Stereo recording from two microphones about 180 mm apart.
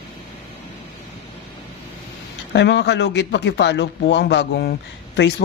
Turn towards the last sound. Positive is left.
turn(degrees=65)  # may be behind; listen again after turning